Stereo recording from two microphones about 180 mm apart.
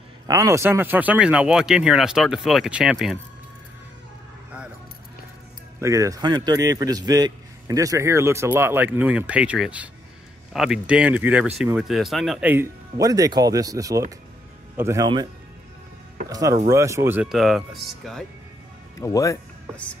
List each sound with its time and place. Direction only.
0.3 s speech: 15° right (ahead or behind)
5.8 s speech: 15° right (ahead or behind)
16.3 s speech: 20° right (ahead or behind); by 17.6 s centre (ahead or behind)
18.9 s speech: 15° left (ahead or behind)